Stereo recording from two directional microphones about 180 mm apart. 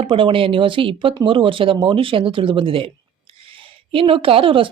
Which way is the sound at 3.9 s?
30° right (ahead or behind).